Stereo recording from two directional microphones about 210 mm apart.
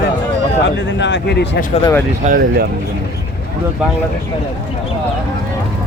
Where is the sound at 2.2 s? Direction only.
40° right (ahead or behind).